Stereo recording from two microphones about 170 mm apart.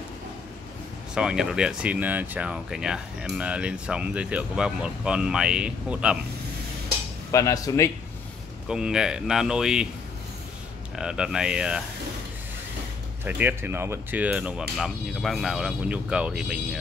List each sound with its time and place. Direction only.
1.1 s speech: 5° right (ahead or behind)
7.2 s speech: 20° left (ahead or behind)
8.6 s speech: 5° right (ahead or behind)
11.0 s speech: 5° right (ahead or behind)
13.2 s speech: 10° right (ahead or behind)